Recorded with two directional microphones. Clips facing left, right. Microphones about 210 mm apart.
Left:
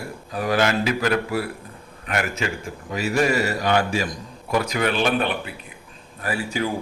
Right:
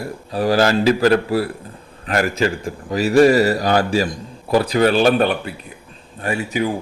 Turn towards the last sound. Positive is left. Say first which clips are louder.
# right 4 dB
turn(degrees=-20)  # may be behind; listen again after turning